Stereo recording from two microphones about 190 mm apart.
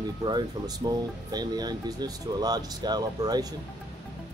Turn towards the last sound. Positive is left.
turn(degrees=-20)  # may be behind; listen again after turning